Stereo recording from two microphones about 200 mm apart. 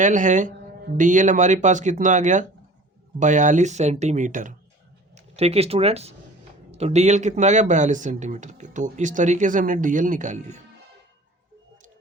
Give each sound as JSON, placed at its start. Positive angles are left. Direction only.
{"t": 0.0, "sound": "speech", "side_deg": -40}